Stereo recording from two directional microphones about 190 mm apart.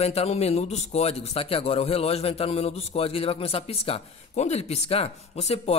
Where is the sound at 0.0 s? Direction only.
35° left (ahead or behind).